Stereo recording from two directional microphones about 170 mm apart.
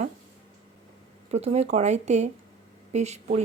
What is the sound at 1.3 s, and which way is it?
A woman's voice, 40° right (ahead or behind).